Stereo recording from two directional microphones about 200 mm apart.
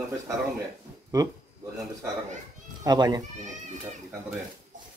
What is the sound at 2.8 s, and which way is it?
Speech, 20° right (ahead or behind).